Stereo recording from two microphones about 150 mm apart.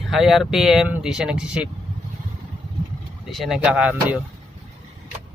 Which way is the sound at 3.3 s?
Centre (ahead or behind).